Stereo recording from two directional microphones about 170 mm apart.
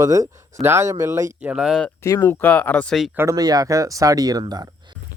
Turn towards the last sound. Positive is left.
turn(degrees=-25)  # may be behind; listen again after turning